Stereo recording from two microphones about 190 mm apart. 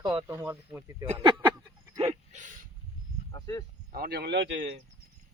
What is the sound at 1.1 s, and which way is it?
Speech, 30° right (ahead or behind).